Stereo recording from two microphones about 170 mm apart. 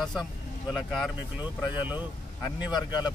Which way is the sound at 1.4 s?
10° right (ahead or behind).